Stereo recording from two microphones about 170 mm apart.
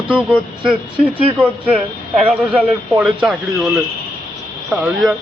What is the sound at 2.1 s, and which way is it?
A man's voice, 5° right (ahead or behind).